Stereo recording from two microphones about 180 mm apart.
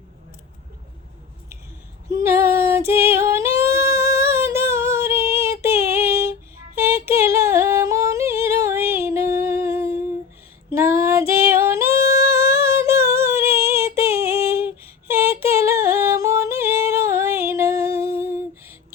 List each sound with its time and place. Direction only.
2.0 s female singing: 15° right (ahead or behind)
7.1 s yodeling: 15° right (ahead or behind)
11.3 s singing: 10° right (ahead or behind)
13.7 s female singing: 15° right (ahead or behind)
15.1 s singing: 15° right (ahead or behind)